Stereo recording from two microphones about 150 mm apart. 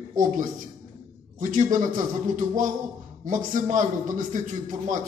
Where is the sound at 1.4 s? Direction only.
60° right (ahead or behind).